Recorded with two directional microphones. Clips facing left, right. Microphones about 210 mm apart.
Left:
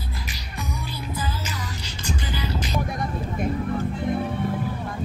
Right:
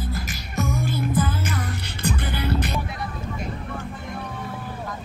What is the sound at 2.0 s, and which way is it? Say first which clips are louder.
Music: right 3 dB; 60° right (ahead or behind).